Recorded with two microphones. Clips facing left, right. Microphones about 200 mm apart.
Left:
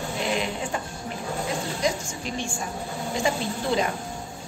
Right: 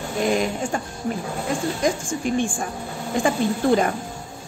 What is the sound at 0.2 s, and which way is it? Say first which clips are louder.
Speech: right 7 dB; 45° right (ahead or behind).